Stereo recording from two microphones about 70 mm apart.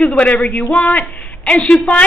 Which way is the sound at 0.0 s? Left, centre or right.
Centre.